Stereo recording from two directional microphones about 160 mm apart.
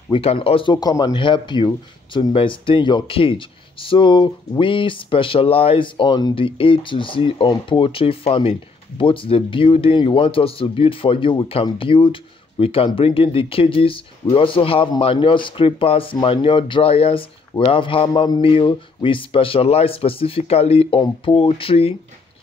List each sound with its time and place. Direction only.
0.1 s speech: 35° left (ahead or behind)